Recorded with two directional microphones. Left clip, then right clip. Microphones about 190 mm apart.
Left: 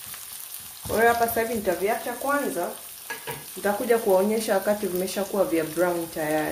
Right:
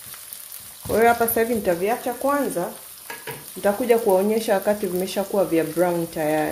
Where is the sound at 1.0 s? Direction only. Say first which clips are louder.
Right 3 dB; 50° right (ahead or behind).